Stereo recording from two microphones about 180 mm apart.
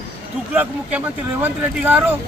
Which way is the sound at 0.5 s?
10° right (ahead or behind).